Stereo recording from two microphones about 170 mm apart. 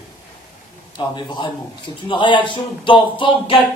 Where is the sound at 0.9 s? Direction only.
25° left (ahead or behind).